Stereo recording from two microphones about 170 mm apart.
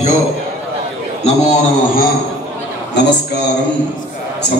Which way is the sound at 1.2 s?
45° left (ahead or behind).